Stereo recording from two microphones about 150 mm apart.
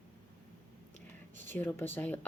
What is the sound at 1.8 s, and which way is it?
Speech, 15° left (ahead or behind).